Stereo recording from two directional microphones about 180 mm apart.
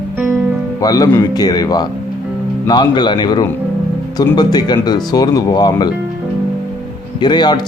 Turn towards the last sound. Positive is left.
turn(degrees=25)  # may be behind; listen again after turning